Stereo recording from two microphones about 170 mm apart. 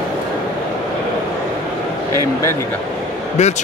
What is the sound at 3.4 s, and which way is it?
Speech, 45° left (ahead or behind).